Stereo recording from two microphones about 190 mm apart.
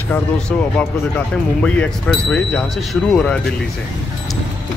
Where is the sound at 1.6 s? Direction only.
5° left (ahead or behind).